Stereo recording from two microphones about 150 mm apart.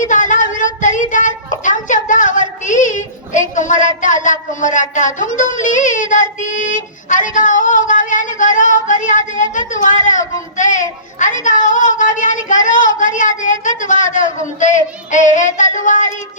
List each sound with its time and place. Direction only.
0.0 s child singing: 60° left (ahead or behind)
5.4 s music: 55° left (ahead or behind)
6.4 s child singing: 60° left (ahead or behind)